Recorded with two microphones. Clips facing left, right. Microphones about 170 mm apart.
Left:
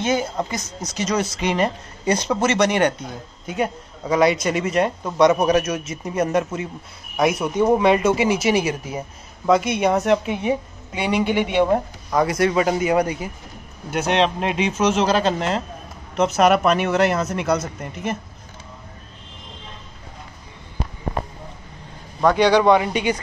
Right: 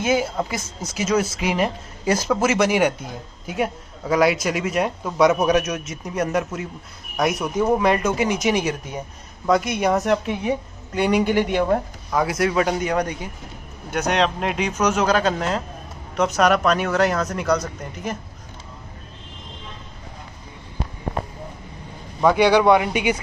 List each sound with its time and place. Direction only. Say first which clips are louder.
0.0 s speech: right 1 dB; 5° right (ahead or behind)
14.1 s speech: left 2 dB; 25° left (ahead or behind)
15.3 s speech: left 1 dB; centre (ahead or behind)
22.2 s speech: even; 10° right (ahead or behind)